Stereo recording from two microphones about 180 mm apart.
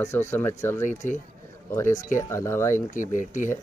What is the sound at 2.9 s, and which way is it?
Speech, 45° left (ahead or behind).